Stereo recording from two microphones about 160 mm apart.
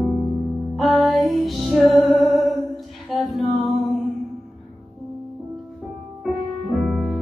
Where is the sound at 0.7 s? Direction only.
Centre (ahead or behind).